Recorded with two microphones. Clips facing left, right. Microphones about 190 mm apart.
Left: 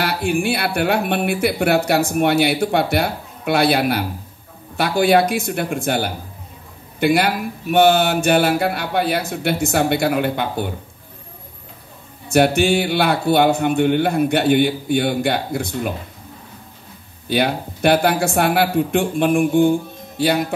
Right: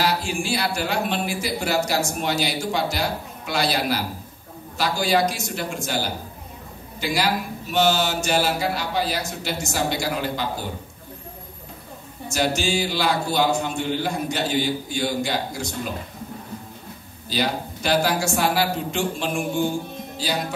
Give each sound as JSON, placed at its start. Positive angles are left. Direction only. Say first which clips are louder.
{"t": 0.0, "sound": "speech", "louder": "left 4 dB", "side_deg": 60}
{"t": 12.3, "sound": "speech", "louder": "left 8 dB", "side_deg": 60}
{"t": 17.3, "sound": "speech", "louder": "left 6 dB", "side_deg": 60}